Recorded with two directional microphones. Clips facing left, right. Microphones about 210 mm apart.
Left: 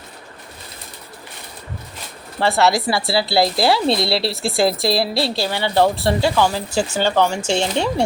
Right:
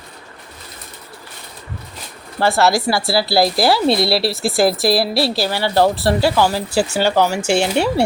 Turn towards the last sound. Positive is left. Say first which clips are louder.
# right 3 dB
turn(degrees=-10)  # may be behind; listen again after turning